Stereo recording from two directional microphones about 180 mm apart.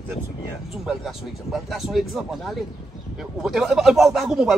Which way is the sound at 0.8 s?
Centre (ahead or behind).